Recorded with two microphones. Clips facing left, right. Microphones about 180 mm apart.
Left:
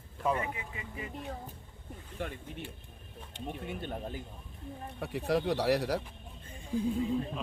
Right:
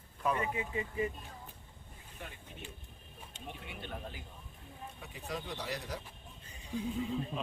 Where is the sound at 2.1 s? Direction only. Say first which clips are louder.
Left 10 dB; 60° left (ahead or behind).